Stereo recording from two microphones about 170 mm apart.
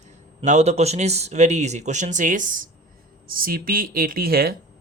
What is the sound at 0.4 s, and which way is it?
Speech, 40° right (ahead or behind).